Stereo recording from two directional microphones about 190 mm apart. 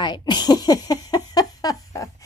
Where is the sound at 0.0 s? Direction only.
25° left (ahead or behind).